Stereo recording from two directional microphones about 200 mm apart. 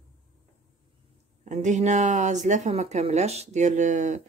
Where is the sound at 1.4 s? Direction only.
35° right (ahead or behind).